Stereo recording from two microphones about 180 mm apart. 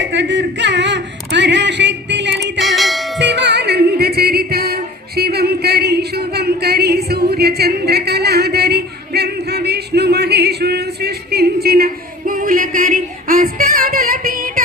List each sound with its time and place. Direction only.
0.1 s a sound: 80° right
2.6 s music: centre (ahead or behind)
3.2 s music: 70° right (ahead or behind); by 14.6 s 50° right (ahead or behind)